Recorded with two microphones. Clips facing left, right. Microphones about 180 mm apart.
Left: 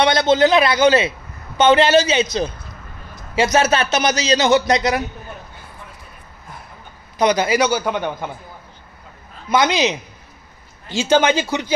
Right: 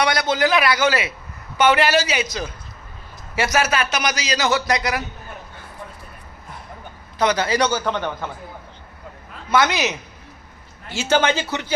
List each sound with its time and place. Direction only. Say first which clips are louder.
0.0 s a man's voice: left 5 dB; 25° left (ahead or behind)
3.3 s a man's voice: left 4 dB; 20° left (ahead or behind)
7.2 s a man's voice: left 3 dB; 15° left (ahead or behind)
9.5 s a man's voice: left 2 dB; 15° left (ahead or behind)